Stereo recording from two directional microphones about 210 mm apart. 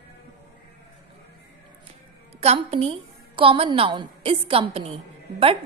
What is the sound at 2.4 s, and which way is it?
A woman's voice, 30° right (ahead or behind).